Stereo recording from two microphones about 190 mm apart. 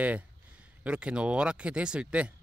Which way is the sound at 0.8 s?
5° right (ahead or behind).